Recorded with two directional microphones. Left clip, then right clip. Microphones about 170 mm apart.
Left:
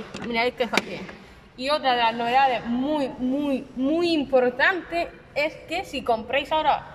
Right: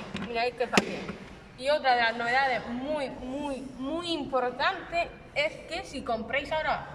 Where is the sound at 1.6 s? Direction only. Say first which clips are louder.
Left 3 dB; 15° left (ahead or behind).